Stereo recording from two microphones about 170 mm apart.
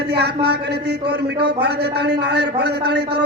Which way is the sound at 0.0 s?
75° right (ahead or behind).